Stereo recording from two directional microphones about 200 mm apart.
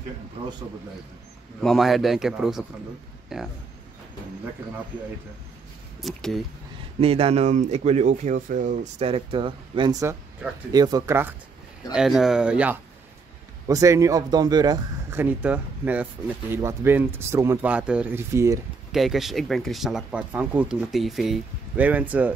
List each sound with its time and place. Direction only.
1.6 s speech: centre (ahead or behind)
6.0 s speech: centre (ahead or behind)
7.0 s speech: 30° right (ahead or behind)
18.9 s speech: centre (ahead or behind)